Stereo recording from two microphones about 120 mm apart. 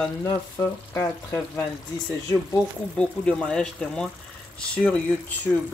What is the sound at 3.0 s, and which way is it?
Speech, 5° left (ahead or behind).